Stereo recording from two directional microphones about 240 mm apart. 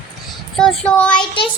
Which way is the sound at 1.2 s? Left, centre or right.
Left.